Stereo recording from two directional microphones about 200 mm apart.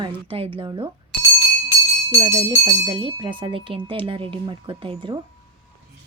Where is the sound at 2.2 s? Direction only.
15° right (ahead or behind).